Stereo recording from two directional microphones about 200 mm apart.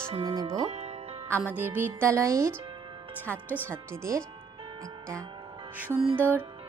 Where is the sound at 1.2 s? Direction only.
10° right (ahead or behind).